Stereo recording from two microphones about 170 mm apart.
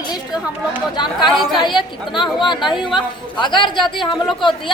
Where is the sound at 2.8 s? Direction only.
30° left (ahead or behind).